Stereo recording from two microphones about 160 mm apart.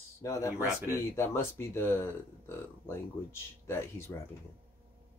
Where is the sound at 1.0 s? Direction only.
15° left (ahead or behind).